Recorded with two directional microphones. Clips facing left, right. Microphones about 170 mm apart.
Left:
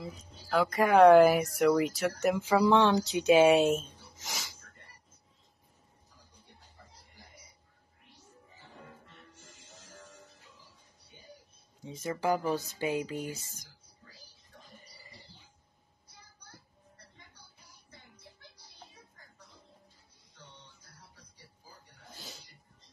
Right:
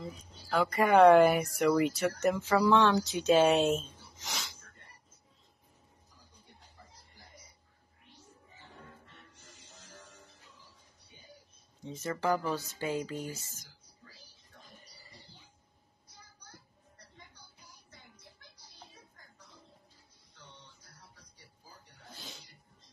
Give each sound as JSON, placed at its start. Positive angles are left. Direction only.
{"t": 0.0, "sound": "speech", "side_deg": 0}
{"t": 11.8, "sound": "music", "side_deg": 10}